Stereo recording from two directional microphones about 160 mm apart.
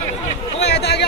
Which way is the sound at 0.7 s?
90° left.